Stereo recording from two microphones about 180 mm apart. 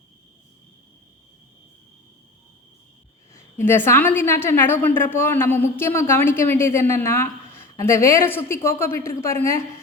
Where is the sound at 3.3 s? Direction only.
10° left (ahead or behind).